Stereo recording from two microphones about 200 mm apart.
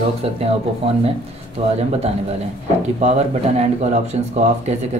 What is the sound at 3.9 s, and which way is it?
Speech, 35° right (ahead or behind).